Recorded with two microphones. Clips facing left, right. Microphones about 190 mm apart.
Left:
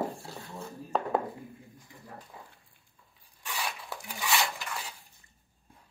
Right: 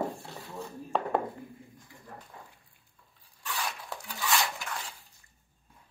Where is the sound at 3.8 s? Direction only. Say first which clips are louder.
Even; centre (ahead or behind).